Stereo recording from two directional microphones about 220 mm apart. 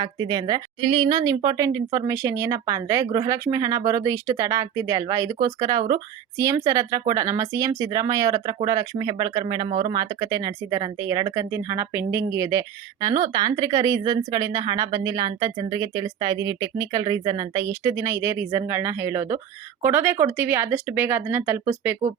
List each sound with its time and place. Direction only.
0.0 s speech: 20° right (ahead or behind)